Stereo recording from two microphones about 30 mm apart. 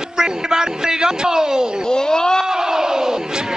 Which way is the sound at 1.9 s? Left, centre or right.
Left.